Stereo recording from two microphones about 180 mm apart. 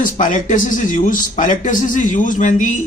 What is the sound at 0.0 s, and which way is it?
A man's voice, 45° left (ahead or behind).